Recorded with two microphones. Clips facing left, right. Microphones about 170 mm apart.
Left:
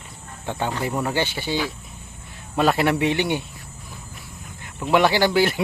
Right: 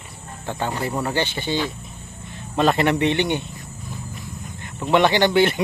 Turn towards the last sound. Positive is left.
turn(degrees=0)  # may be behind; listen again after turning